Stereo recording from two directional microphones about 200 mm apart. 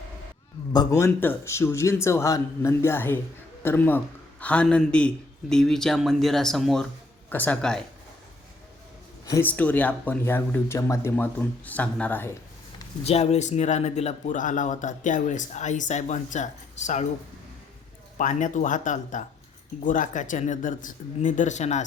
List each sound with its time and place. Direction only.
0.7 s a man's voice: 20° left (ahead or behind)
9.2 s speech: 10° left (ahead or behind)
13.1 s speech: 30° left (ahead or behind)
18.2 s speech: 40° left (ahead or behind)